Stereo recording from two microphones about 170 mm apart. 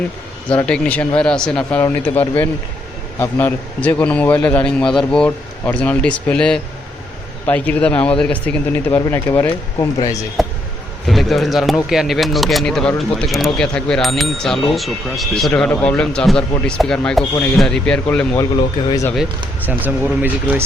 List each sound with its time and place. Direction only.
0.5 s a man's voice: 5° left (ahead or behind)
10.4 s a sound: centre (ahead or behind)
11.1 s speech: centre (ahead or behind)
18.9 s speech: 20° left (ahead or behind)
19.6 s speech: 10° right (ahead or behind)